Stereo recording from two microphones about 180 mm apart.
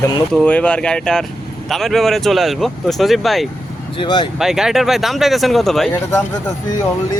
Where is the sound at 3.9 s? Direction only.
25° left (ahead or behind).